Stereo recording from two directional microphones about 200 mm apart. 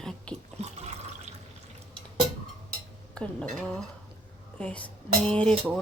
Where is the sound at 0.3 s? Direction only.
5° left (ahead or behind).